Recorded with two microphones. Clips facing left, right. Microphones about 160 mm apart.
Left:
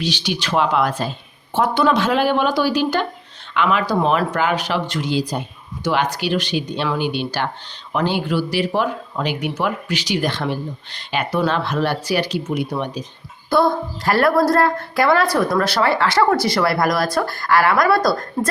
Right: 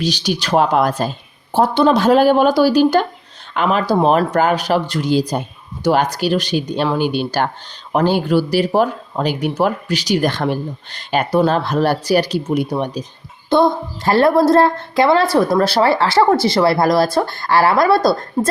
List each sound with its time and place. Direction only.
0.0 s speech: 40° right (ahead or behind)
1.5 s speech: 30° right (ahead or behind)
13.5 s a woman's voice: 20° right (ahead or behind)